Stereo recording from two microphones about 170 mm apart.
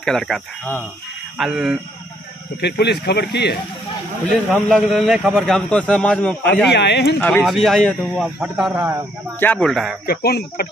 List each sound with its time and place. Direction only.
0.0 s a man's voice: 5° left (ahead or behind)
2.6 s speech: 75° left (ahead or behind)
4.6 s a man's voice: 5° left (ahead or behind)
6.7 s speech: 80° left
7.2 s a man's voice: 10° left (ahead or behind); by 9.0 s 10° right (ahead or behind)
9.4 s a man's voice: 10° left (ahead or behind)
10.0 s speech: 65° left (ahead or behind)